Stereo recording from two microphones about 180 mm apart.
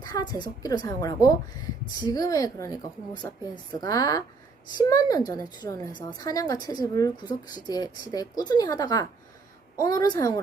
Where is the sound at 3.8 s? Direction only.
20° left (ahead or behind).